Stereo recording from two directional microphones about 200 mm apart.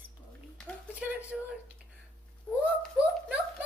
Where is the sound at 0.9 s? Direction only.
5° right (ahead or behind).